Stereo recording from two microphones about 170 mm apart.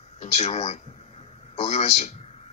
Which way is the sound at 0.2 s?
40° left (ahead or behind).